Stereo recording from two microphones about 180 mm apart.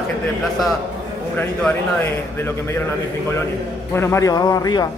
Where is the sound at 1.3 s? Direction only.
10° left (ahead or behind).